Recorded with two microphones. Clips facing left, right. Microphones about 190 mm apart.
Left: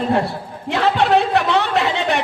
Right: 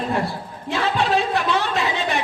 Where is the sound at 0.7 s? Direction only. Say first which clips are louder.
Left 5 dB; 65° left (ahead or behind).